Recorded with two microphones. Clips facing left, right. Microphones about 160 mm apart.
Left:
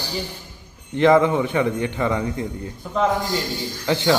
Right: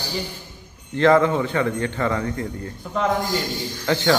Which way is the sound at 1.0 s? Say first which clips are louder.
Left 1 dB; 15° left (ahead or behind).